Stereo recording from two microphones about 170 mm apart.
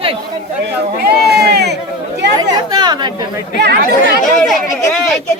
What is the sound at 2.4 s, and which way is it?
Chatter, 25° right (ahead or behind).